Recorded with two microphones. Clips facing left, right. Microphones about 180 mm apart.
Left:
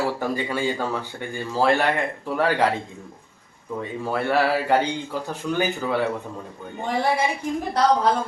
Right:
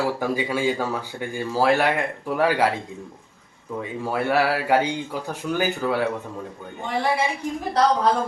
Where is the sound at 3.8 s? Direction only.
10° right (ahead or behind).